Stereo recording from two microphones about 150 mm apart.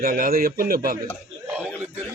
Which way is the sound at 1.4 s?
10° right (ahead or behind).